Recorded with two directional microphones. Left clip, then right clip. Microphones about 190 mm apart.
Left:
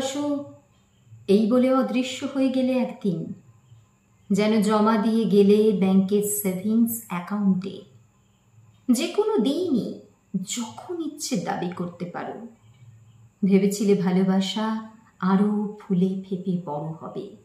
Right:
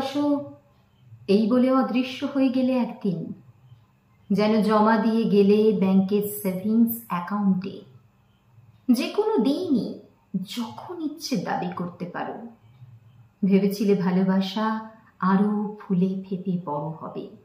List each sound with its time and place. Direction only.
1.3 s speech: 20° left (ahead or behind)
4.3 s a woman's voice: 20° left (ahead or behind)
8.8 s speech: 20° left (ahead or behind)
13.4 s a woman's voice: 20° left (ahead or behind)